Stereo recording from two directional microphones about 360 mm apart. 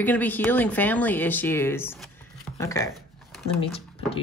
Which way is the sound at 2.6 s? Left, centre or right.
Centre.